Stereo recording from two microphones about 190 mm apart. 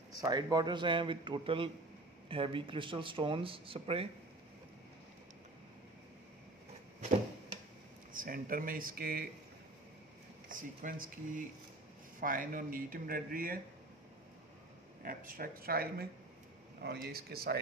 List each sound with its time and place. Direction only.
0.2 s speech: 20° right (ahead or behind)
8.1 s speech: 45° right (ahead or behind)
10.5 s speech: 45° right (ahead or behind)
15.0 s speech: 50° right (ahead or behind)